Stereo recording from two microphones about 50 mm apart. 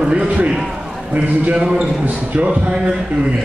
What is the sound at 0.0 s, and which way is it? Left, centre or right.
A man's voice, right.